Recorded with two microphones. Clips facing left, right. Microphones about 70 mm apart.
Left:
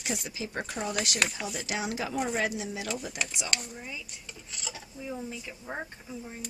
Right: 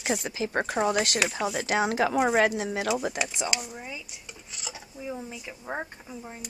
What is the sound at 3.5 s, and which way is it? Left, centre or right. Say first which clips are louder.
Speech: right 2 dB; centre.